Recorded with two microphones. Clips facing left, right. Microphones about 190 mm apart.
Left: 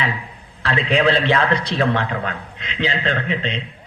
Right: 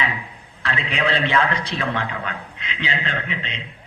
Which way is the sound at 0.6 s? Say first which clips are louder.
Left 7 dB; 35° left (ahead or behind).